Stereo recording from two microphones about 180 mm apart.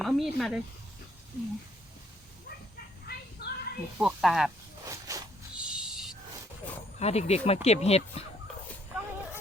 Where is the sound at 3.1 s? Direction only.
60° left (ahead or behind).